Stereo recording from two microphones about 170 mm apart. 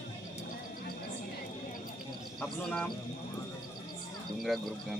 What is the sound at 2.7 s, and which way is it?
Speech, 5° left (ahead or behind).